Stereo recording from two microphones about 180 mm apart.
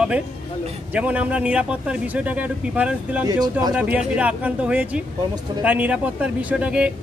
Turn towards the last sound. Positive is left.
turn(degrees=-5)  # may be behind; listen again after turning